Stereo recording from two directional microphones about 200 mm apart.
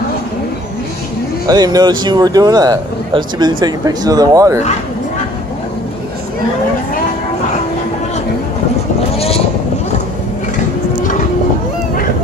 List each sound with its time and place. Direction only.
1.5 s speech: 20° right (ahead or behind)